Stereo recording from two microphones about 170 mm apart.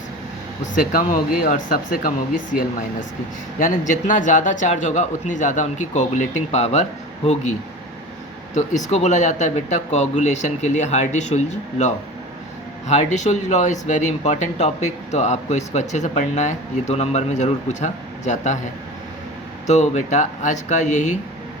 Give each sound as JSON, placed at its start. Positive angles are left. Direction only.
{"t": 0.7, "sound": "speech", "side_deg": 55}
{"t": 8.5, "sound": "speech", "side_deg": 45}
{"t": 12.9, "sound": "speech", "side_deg": 45}
{"t": 19.6, "sound": "speech", "side_deg": 40}